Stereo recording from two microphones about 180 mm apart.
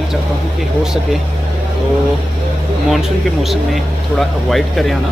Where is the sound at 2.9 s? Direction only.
Centre (ahead or behind).